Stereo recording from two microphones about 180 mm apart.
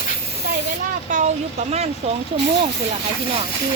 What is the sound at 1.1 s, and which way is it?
Speech, 45° right (ahead or behind).